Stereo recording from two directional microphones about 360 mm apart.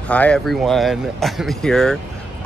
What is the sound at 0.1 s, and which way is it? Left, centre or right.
Speech, centre.